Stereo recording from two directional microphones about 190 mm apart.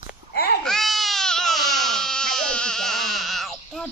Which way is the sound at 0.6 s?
Centre (ahead or behind).